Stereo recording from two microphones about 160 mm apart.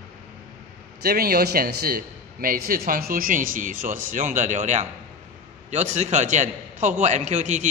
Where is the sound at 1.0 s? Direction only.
70° right (ahead or behind).